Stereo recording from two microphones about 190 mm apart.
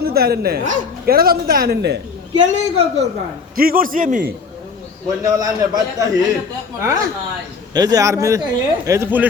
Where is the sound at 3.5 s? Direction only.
50° right (ahead or behind).